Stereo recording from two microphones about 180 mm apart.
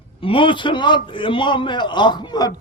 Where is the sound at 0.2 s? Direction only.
30° left (ahead or behind).